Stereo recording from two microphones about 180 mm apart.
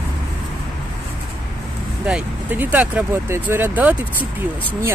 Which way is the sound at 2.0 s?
10° right (ahead or behind).